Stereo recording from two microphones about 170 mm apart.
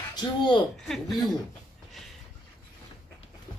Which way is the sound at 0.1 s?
25° left (ahead or behind).